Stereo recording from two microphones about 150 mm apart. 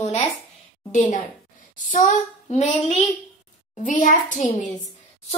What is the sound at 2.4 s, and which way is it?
Child singing, 50° left (ahead or behind).